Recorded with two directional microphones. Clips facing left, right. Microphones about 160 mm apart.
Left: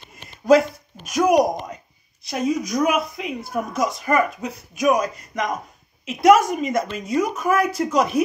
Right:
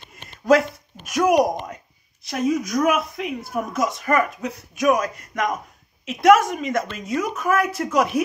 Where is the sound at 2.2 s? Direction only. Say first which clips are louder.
Right 1 dB; 5° right (ahead or behind).